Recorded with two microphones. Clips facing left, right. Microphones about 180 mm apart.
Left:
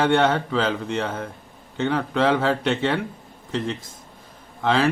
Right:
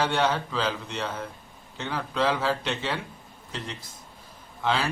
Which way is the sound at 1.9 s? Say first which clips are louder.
Left 6 dB; 70° left (ahead or behind).